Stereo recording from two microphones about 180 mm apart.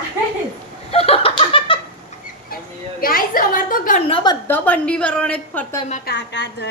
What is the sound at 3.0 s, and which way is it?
A woman's voice, 55° left (ahead or behind).